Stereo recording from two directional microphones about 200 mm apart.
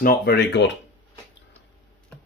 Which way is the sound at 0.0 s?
50° left (ahead or behind).